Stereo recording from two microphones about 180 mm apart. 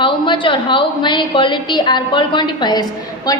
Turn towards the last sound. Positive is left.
turn(degrees=20)  # may be behind; listen again after turning